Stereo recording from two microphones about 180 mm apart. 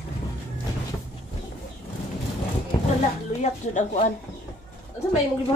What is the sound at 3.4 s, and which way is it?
Speech, 40° left (ahead or behind).